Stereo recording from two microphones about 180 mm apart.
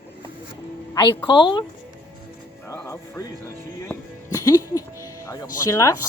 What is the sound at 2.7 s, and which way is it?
Speech, 15° left (ahead or behind).